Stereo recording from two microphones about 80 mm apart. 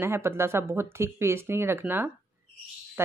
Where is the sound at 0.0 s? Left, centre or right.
Right.